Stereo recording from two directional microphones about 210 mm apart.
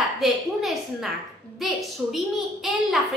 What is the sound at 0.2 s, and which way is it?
Speech, centre (ahead or behind).